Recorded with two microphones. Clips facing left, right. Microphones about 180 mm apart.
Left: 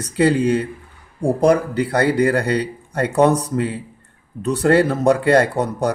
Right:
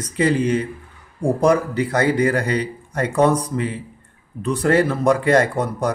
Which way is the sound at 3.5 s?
45° left (ahead or behind).